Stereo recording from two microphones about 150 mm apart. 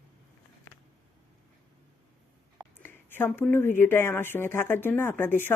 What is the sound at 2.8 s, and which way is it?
Speech, 15° left (ahead or behind).